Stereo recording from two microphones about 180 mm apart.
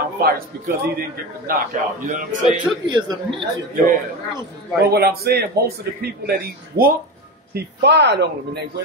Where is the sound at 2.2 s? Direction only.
45° right (ahead or behind).